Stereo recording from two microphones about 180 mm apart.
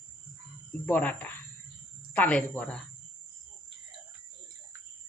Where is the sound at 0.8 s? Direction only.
10° left (ahead or behind).